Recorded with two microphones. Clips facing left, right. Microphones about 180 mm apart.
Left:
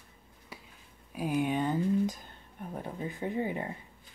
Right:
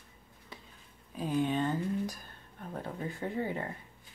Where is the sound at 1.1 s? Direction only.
10° left (ahead or behind).